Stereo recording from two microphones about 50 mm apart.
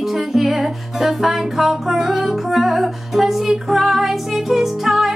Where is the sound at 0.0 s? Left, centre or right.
Centre.